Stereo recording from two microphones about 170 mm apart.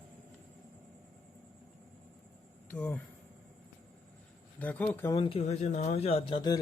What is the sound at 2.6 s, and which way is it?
Speech, 10° left (ahead or behind).